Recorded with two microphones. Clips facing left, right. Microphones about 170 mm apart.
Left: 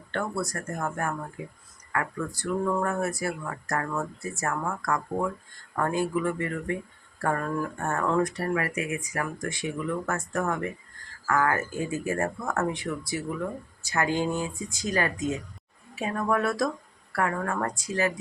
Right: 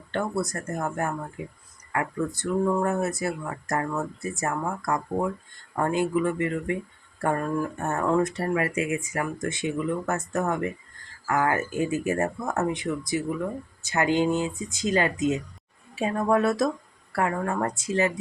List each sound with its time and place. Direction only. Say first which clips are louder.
0.1 s speech: right 3 dB; 20° right (ahead or behind)